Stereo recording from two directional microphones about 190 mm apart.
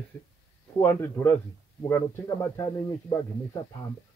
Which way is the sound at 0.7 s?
10° left (ahead or behind).